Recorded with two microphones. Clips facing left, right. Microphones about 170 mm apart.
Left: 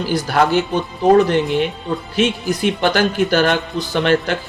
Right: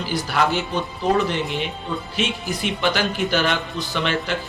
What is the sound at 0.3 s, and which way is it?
Speech, 50° left (ahead or behind).